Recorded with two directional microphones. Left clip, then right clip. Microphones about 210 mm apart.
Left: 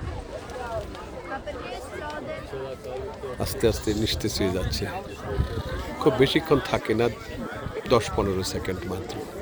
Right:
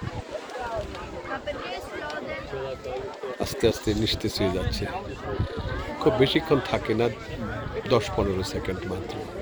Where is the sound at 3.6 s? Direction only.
5° left (ahead or behind).